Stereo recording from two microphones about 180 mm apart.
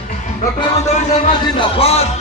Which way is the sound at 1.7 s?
35° left (ahead or behind).